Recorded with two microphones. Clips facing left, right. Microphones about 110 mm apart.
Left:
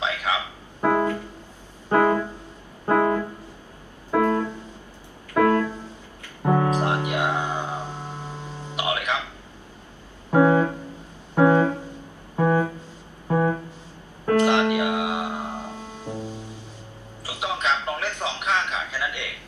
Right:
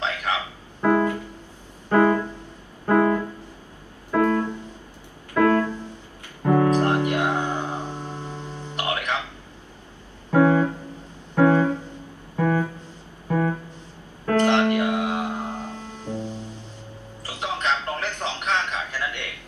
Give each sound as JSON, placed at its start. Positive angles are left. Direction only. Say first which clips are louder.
{"t": 0.7, "sound": "piano", "louder": "right 1 dB", "side_deg": 20}
{"t": 1.9, "sound": "keyboard", "louder": "right 1 dB", "side_deg": 15}
{"t": 2.9, "sound": "piano", "louder": "right 1 dB", "side_deg": 20}
{"t": 5.3, "sound": "music", "louder": "even", "side_deg": 20}
{"t": 10.3, "sound": "music", "louder": "even", "side_deg": 20}
{"t": 14.3, "sound": "music", "louder": "even", "side_deg": 15}
{"t": 17.2, "sound": "a sound", "louder": "left 1 dB", "side_deg": 15}